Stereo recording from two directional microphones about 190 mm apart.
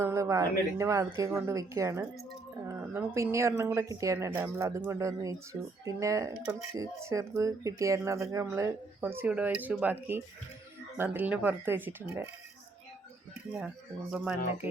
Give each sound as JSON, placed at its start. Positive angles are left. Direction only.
{"t": 0.0, "sound": "a sound", "side_deg": -15}
{"t": 0.8, "sound": "a woman's voice", "side_deg": -15}
{"t": 14.1, "sound": "speech", "side_deg": -5}